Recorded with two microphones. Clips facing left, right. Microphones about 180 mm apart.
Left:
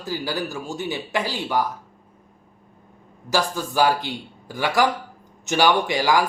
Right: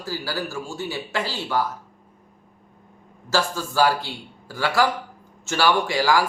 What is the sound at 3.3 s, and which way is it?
Speech, 15° left (ahead or behind).